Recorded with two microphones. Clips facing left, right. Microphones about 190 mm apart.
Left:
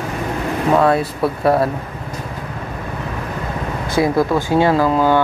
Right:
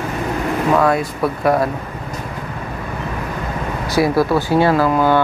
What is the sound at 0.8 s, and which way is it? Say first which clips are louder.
Speech: left 1 dB; 30° left (ahead or behind).